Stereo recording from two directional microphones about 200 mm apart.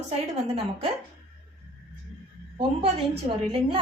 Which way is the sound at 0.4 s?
30° right (ahead or behind).